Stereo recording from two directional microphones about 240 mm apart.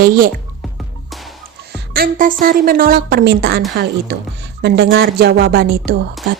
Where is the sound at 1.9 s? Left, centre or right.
Right.